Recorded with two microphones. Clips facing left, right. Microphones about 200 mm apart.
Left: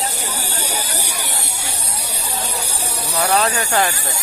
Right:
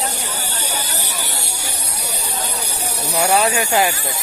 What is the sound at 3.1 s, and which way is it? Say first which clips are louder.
Speech: right 2 dB; 30° right (ahead or behind).